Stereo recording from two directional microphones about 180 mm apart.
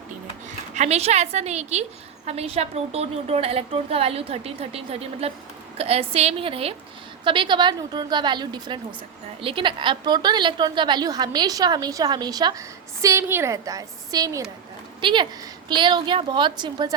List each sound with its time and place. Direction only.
0.7 s a woman's voice: 40° right (ahead or behind)